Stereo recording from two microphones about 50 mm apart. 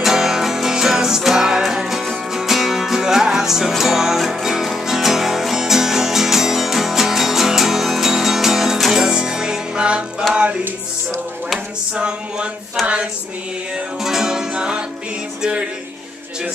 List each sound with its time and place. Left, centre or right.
0.0 s music: centre
11.9 s music: centre